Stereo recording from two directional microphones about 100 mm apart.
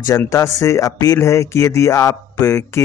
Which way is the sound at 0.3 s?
30° left (ahead or behind).